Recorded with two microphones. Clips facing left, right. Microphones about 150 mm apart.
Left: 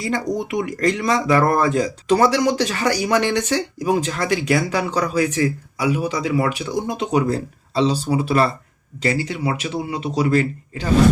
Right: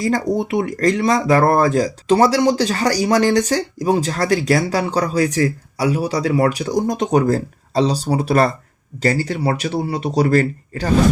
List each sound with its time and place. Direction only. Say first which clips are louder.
0.0 s speech: right 4 dB; 35° right (ahead or behind)